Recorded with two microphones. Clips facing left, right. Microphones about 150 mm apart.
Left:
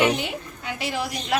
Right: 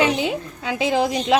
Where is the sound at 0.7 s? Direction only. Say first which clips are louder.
Right 9 dB; 90° right.